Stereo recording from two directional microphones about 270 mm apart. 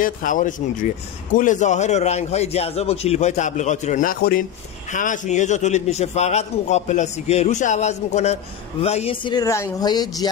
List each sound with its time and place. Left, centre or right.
0.0 s a man's voice: left